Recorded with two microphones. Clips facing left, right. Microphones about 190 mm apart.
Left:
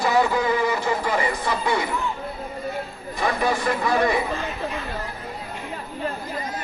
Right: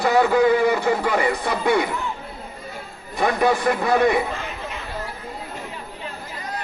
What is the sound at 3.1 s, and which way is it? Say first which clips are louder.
A man's voice: right 4 dB; 60° right (ahead or behind).